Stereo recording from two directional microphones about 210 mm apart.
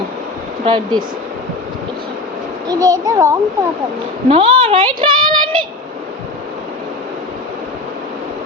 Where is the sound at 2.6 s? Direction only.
15° right (ahead or behind).